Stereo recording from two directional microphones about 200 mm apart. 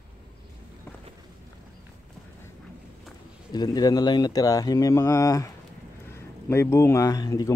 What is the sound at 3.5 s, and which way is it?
Speech, 20° left (ahead or behind).